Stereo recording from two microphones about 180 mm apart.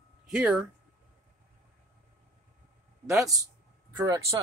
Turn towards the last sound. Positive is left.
turn(degrees=-20)  # may be behind; listen again after turning